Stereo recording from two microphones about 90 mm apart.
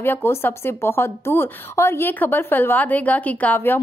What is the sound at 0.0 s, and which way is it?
Speech, 25° left (ahead or behind).